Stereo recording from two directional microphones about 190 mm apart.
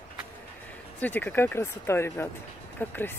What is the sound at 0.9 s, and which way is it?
Speech, 10° left (ahead or behind).